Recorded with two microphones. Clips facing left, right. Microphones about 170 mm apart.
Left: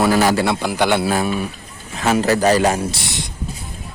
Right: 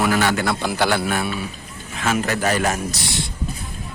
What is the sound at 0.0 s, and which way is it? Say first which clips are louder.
Speech: left 4 dB; 35° left (ahead or behind).